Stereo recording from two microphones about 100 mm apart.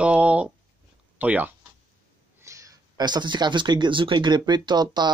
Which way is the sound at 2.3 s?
30° right (ahead or behind).